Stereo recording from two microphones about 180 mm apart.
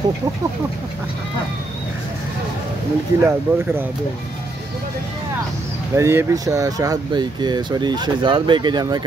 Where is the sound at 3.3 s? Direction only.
15° right (ahead or behind).